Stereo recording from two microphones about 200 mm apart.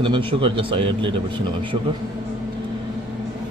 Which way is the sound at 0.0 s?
25° right (ahead or behind).